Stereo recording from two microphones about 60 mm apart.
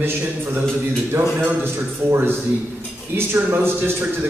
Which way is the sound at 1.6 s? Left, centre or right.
Right.